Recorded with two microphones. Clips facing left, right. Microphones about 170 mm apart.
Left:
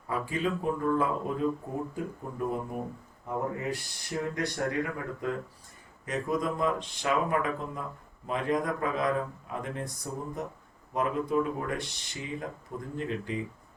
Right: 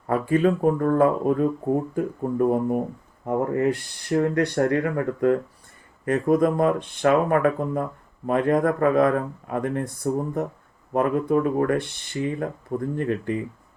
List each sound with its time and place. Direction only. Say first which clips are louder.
0.1 s speech: right 10 dB; 55° right (ahead or behind)